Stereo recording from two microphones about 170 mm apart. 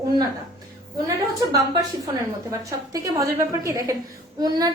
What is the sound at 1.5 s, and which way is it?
A woman's voice, 20° right (ahead or behind).